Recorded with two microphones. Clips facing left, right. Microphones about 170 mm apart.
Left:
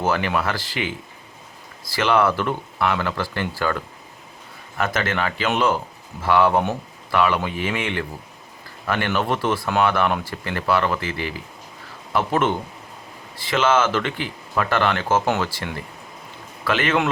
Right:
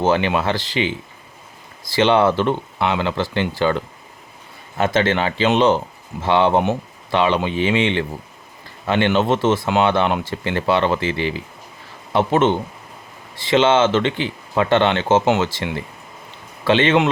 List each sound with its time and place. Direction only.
0.0 s speech: 25° right (ahead or behind)